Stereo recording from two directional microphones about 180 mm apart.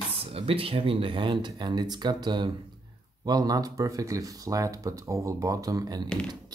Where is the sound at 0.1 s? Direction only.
30° right (ahead or behind).